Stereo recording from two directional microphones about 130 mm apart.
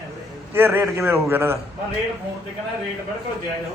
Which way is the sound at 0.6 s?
15° right (ahead or behind).